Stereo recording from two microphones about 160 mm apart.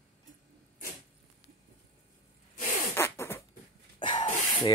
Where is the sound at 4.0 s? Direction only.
30° left (ahead or behind).